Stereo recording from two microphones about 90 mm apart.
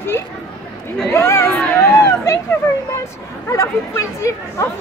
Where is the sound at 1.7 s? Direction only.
30° left (ahead or behind).